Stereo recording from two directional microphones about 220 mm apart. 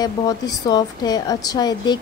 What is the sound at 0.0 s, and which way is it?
A woman's voice, 15° left (ahead or behind).